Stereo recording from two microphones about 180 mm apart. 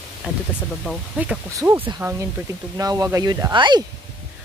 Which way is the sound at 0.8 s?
5° right (ahead or behind).